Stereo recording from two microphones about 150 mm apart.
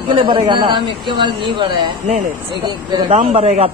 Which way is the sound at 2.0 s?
45° right (ahead or behind).